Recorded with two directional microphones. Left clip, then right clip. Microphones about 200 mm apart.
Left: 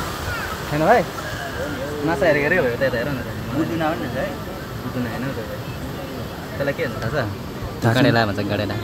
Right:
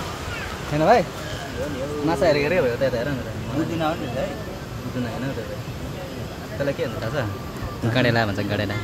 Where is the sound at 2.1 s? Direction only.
15° right (ahead or behind).